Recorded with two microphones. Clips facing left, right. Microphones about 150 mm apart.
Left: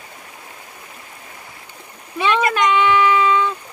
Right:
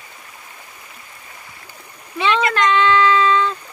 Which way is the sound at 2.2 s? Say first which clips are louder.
Even; 10° left (ahead or behind).